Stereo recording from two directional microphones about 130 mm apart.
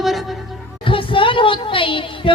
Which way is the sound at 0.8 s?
40° left (ahead or behind).